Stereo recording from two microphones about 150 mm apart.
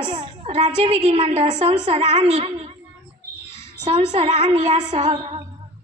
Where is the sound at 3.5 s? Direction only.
15° left (ahead or behind).